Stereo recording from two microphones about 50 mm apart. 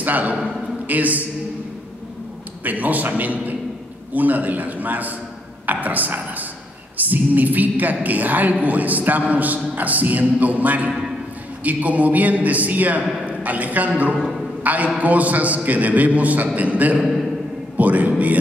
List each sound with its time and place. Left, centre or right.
0.0 s a woman's voice: right
2.6 s a woman's voice: right
17.0 s speech: centre
17.7 s a sound: right